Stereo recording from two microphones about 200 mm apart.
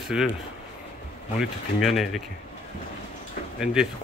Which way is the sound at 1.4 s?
Centre (ahead or behind).